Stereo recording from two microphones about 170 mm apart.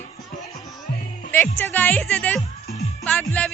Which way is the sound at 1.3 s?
10° left (ahead or behind).